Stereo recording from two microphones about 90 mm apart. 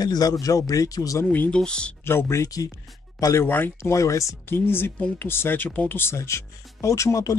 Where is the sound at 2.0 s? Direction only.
30° left (ahead or behind).